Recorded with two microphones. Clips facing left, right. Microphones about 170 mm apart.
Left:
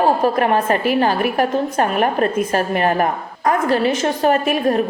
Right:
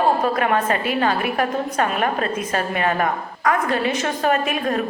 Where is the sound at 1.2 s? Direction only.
40° left (ahead or behind).